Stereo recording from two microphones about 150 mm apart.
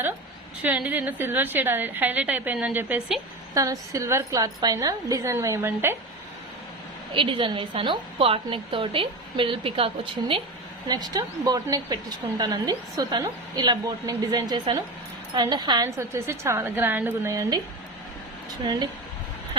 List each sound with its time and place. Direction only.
0.6 s a woman's voice: 10° right (ahead or behind)
3.5 s a woman's voice: 25° right (ahead or behind)
7.1 s a woman's voice: 35° right (ahead or behind)
10.8 s a woman's voice: 25° right (ahead or behind)
18.6 s a woman's voice: 30° right (ahead or behind)